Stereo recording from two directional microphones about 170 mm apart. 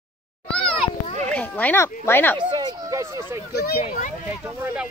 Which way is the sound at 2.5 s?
20° right (ahead or behind).